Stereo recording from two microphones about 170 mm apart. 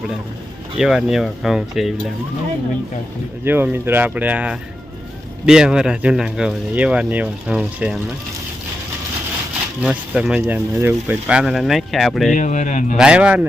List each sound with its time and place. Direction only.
0.8 s speech: 5° right (ahead or behind)
3.4 s speech: 10° right (ahead or behind)
9.8 s speech: 5° right (ahead or behind)
12.3 s speech: 45° left (ahead or behind)
13.0 s speech: 5° right (ahead or behind)